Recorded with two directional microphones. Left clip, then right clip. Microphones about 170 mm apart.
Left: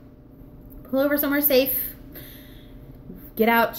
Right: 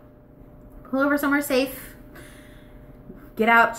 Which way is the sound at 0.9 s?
10° left (ahead or behind).